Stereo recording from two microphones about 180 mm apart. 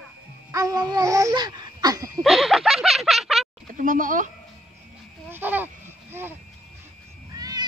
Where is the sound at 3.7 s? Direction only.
50° right (ahead or behind).